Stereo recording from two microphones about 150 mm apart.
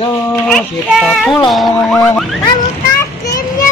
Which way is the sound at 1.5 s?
5° left (ahead or behind).